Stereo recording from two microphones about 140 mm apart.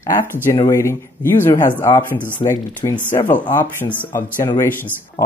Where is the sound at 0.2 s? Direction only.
15° left (ahead or behind).